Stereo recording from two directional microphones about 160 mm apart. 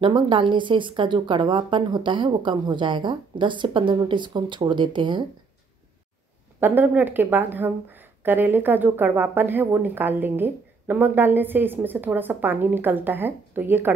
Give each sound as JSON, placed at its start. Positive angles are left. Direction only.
{"t": 0.0, "sound": "speech", "side_deg": -30}
{"t": 6.6, "sound": "a woman's voice", "side_deg": -10}